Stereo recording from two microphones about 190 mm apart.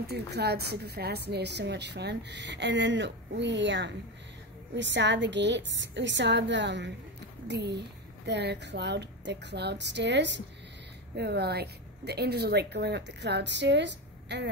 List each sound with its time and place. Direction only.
0.0 s a woman's voice: 60° right (ahead or behind)